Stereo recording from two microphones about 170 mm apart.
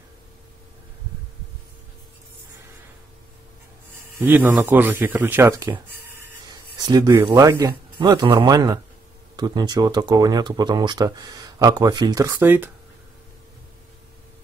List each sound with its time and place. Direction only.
4.2 s speech: 10° right (ahead or behind)
6.8 s speech: 20° right (ahead or behind)